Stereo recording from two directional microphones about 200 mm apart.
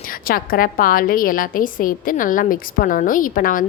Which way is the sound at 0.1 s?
45° left (ahead or behind).